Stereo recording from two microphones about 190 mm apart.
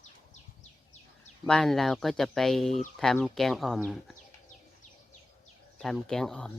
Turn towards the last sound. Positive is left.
turn(degrees=5)  # may be behind; listen again after turning